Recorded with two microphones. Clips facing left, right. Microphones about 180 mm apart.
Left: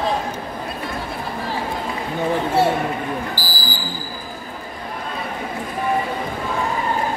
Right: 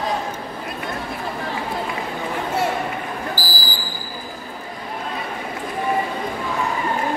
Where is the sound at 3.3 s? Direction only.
25° left (ahead or behind).